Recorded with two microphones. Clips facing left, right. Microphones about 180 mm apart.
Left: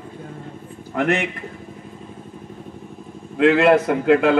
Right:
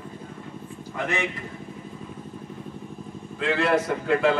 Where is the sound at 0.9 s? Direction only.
65° left (ahead or behind).